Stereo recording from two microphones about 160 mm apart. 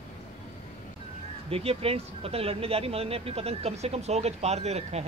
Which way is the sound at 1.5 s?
35° right (ahead or behind).